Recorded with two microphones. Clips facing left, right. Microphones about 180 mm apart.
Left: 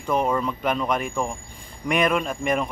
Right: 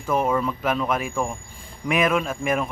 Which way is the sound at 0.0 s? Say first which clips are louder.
Right 1 dB; 5° right (ahead or behind).